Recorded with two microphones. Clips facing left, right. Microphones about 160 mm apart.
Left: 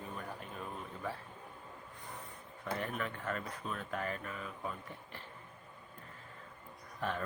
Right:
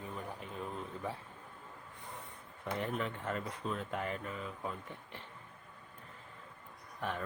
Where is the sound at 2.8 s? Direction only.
25° right (ahead or behind).